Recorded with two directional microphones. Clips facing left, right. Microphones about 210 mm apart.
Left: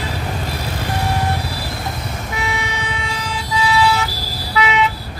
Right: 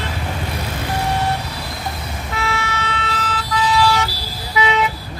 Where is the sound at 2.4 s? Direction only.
15° left (ahead or behind).